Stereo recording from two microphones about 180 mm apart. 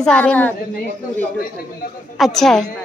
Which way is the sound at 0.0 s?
5° left (ahead or behind).